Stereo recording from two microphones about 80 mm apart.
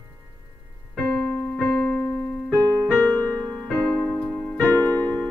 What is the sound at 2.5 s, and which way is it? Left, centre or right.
Keyboard, right.